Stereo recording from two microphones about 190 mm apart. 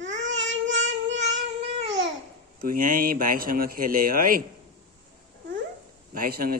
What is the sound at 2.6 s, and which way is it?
A man's voice, 50° right (ahead or behind).